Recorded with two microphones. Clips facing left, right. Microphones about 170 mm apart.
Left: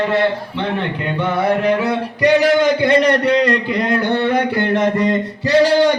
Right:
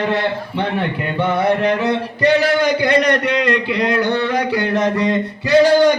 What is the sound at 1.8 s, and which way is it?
A man's voice, 15° left (ahead or behind).